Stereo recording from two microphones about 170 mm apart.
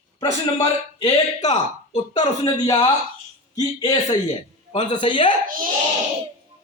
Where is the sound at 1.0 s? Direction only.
40° left (ahead or behind).